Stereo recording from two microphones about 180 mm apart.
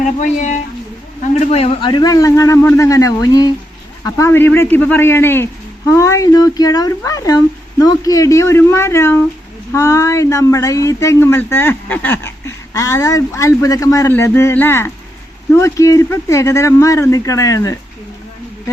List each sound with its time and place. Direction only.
0.0 s speech: 45° left (ahead or behind); by 17.7 s 20° left (ahead or behind)